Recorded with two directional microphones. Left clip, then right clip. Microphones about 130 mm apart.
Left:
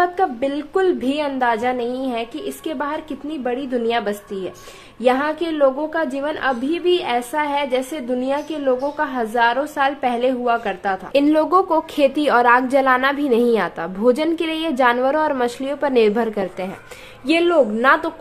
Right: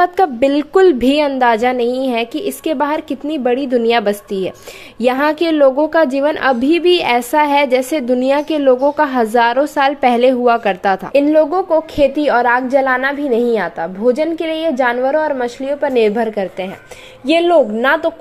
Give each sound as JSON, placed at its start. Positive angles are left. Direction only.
{"t": 0.0, "sound": "a woman's voice", "side_deg": -55}
{"t": 11.2, "sound": "a woman's voice", "side_deg": 0}
{"t": 17.3, "sound": "a woman's voice", "side_deg": -20}